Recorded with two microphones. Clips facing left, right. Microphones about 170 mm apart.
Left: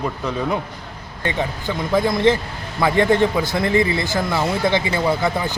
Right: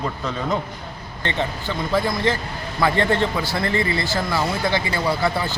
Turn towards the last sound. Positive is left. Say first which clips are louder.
# left 2 dB
turn(degrees=15)  # may be behind; listen again after turning